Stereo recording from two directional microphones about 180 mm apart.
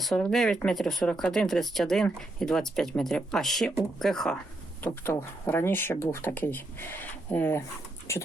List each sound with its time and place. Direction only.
0.0 s speech: centre (ahead or behind)